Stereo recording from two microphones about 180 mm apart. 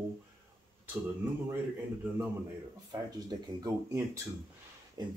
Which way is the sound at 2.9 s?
20° right (ahead or behind).